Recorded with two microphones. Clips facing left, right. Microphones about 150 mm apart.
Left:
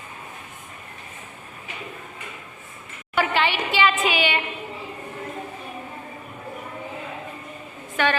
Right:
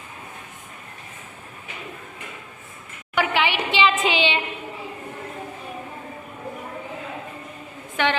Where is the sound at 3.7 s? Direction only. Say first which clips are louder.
Right 1 dB; 25° right (ahead or behind).